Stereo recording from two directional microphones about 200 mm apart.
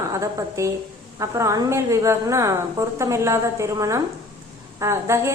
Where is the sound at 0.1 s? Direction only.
15° right (ahead or behind).